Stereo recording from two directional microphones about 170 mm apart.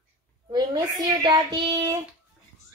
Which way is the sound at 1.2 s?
25° right (ahead or behind).